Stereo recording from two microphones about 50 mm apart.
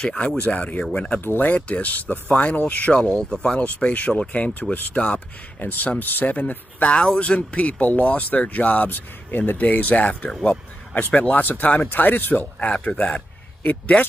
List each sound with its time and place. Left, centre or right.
0.0 s speech: left
1.2 s speech: left
1.5 s speech: left
2.9 s speech: centre
3.4 s speech: left
5.6 s speech: left
6.9 s speech: left
12.5 s speech: left